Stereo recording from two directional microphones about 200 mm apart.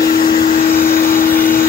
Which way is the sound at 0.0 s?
45° left (ahead or behind).